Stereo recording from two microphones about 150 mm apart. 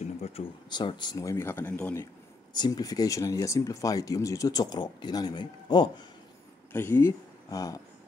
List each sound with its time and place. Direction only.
0.7 s speech: 30° left (ahead or behind); by 2.0 s 10° left (ahead or behind)
2.5 s speech: 30° left (ahead or behind)
6.7 s speech: 15° left (ahead or behind)